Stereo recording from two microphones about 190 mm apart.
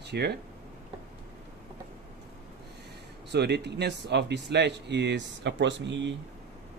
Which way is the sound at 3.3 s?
60° right (ahead or behind).